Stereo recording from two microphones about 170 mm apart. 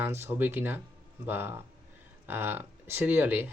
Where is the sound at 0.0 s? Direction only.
15° right (ahead or behind).